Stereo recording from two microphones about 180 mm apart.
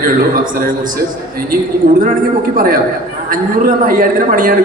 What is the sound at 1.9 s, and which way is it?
Speech, 45° right (ahead or behind).